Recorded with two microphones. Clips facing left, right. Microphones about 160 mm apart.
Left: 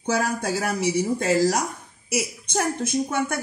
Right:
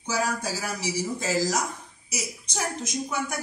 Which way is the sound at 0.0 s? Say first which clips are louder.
Left 4 dB; 60° left (ahead or behind).